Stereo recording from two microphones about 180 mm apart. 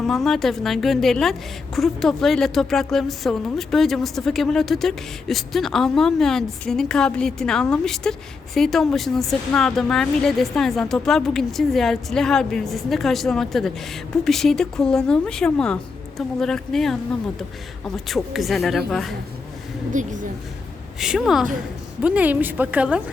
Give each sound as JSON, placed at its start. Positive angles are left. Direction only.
{"t": 0.0, "sound": "a woman's voice", "side_deg": 0}
{"t": 19.9, "sound": "a woman's voice", "side_deg": -45}
{"t": 21.0, "sound": "a woman's voice", "side_deg": -5}